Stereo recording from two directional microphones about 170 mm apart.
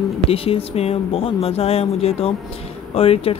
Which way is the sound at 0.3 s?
35° left (ahead or behind).